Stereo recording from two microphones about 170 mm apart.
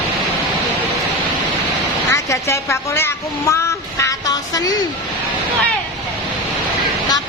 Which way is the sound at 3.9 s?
20° left (ahead or behind).